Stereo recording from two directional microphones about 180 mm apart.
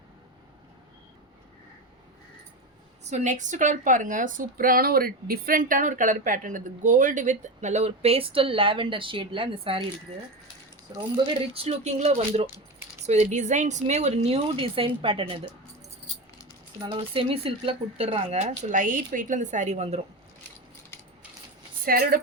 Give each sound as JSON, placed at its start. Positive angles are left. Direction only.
{"t": 3.0, "sound": "a woman's voice", "side_deg": -40}
{"t": 11.5, "sound": "speech", "side_deg": -35}
{"t": 16.8, "sound": "speech", "side_deg": -30}
{"t": 21.8, "sound": "a woman's voice", "side_deg": -55}